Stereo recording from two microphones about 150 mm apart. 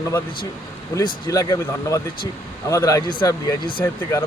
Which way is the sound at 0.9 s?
25° left (ahead or behind).